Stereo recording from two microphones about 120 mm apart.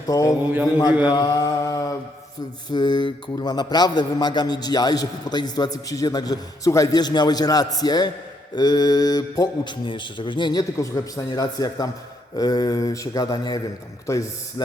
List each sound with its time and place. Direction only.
0.1 s a man's voice: 30° left (ahead or behind)
1.1 s mantra: 30° left (ahead or behind)
2.6 s a man's voice: 40° left (ahead or behind)
14.1 s mantra: 25° left (ahead or behind)